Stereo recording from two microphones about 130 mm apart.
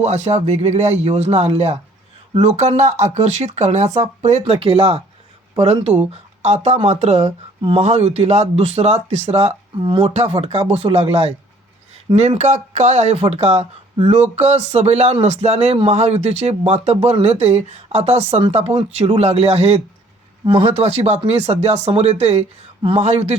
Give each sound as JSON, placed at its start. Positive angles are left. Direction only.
{"t": 0.0, "sound": "speech", "side_deg": -60}
{"t": 9.8, "sound": "speech", "side_deg": -35}
{"t": 10.1, "sound": "speech", "side_deg": -50}
{"t": 20.4, "sound": "speech", "side_deg": -35}
{"t": 20.7, "sound": "speech", "side_deg": -55}
{"t": 23.0, "sound": "speech", "side_deg": -55}